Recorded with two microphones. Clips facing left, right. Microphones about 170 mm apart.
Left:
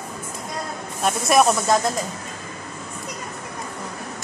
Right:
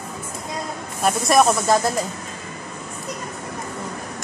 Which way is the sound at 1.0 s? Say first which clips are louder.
Right 1 dB; centre (ahead or behind).